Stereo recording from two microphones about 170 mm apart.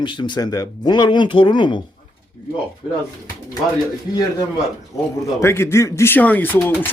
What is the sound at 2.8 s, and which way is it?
Speech, 35° left (ahead or behind).